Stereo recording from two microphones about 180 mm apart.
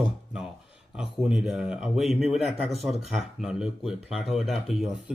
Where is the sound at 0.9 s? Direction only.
5° right (ahead or behind).